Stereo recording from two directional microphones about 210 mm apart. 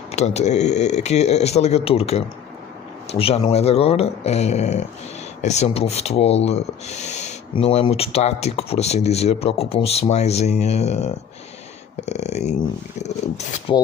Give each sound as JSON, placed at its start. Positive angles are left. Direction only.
{"t": 0.1, "sound": "speech", "side_deg": 30}